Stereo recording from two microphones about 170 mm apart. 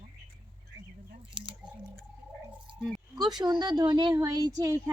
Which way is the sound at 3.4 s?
25° right (ahead or behind).